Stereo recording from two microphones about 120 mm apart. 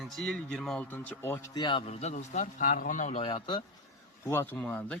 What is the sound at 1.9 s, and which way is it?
A man's voice, 65° left (ahead or behind).